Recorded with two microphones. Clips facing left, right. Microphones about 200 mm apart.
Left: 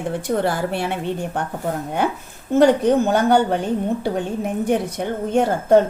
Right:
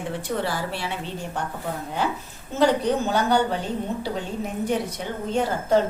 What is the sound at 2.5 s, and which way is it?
A woman's voice, 50° left (ahead or behind).